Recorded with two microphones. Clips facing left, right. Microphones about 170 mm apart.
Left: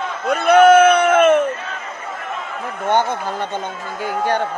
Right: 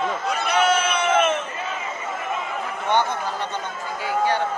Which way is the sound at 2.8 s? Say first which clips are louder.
Left 4 dB; 50° left (ahead or behind).